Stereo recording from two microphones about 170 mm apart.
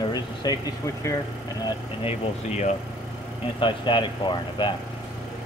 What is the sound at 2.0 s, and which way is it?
Speech, 40° left (ahead or behind).